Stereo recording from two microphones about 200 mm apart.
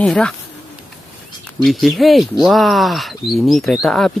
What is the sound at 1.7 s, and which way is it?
Speech, centre (ahead or behind).